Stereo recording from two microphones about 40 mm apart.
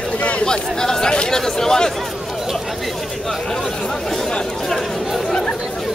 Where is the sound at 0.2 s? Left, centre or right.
Left.